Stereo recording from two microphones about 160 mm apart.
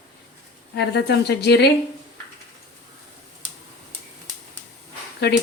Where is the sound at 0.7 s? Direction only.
90° left.